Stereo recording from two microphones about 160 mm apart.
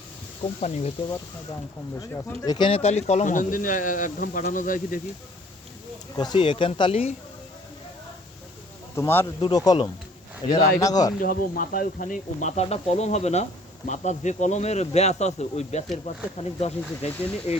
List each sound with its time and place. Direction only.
0.6 s speech: 45° left (ahead or behind)
2.0 s speech: 25° left (ahead or behind); by 4.9 s 55° left (ahead or behind)
6.1 s speech: 25° left (ahead or behind)
9.0 s speech: 15° left (ahead or behind)
10.4 s speech: 40° left (ahead or behind)
10.8 s speech: 20° left (ahead or behind)
11.2 s speech: 60° left (ahead or behind); by 17.1 s 40° left (ahead or behind)